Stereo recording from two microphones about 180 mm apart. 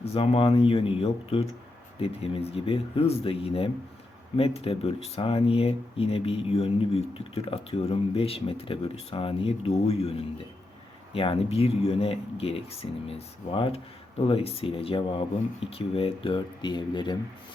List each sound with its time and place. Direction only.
0.0 s speech: 35° left (ahead or behind)